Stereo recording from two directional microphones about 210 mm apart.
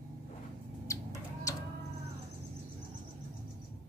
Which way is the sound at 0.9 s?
15° left (ahead or behind).